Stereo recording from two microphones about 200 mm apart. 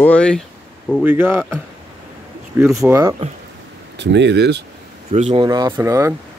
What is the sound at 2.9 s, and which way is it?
Speech, 15° right (ahead or behind).